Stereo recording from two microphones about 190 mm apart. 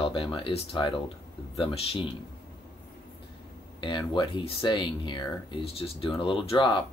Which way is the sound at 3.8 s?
25° left (ahead or behind).